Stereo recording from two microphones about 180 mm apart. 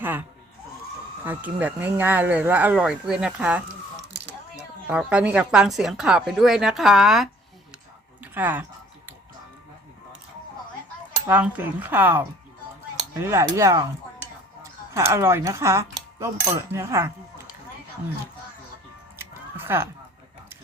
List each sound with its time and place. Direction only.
0.0 s a sound: 10° right (ahead or behind)
1.2 s speech: 10° right (ahead or behind)
4.9 s a woman's voice: 5° right (ahead or behind)
11.3 s speech: 10° right (ahead or behind)
19.2 s music: 15° right (ahead or behind)